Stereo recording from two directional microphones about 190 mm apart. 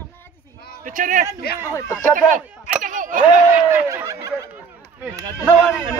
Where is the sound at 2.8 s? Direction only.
45° right (ahead or behind).